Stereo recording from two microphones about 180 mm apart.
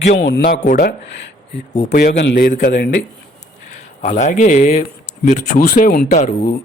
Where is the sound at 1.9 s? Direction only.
65° left (ahead or behind).